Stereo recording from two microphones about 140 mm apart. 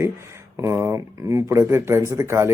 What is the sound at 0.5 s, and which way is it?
Speech, 20° right (ahead or behind).